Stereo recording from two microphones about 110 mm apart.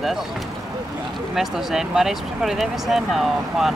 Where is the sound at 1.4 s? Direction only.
5° right (ahead or behind).